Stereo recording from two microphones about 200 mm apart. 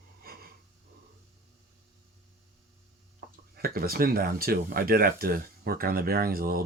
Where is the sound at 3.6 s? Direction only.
50° right (ahead or behind).